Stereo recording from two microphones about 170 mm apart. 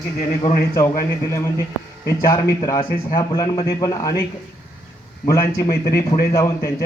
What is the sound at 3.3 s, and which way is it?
Speech, 20° left (ahead or behind).